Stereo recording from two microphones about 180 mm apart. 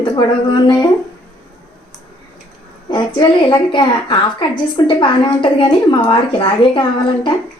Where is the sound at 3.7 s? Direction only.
25° left (ahead or behind).